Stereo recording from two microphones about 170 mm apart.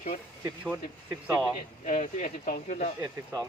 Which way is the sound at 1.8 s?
45° left (ahead or behind).